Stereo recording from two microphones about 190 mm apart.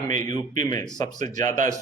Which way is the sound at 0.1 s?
40° right (ahead or behind).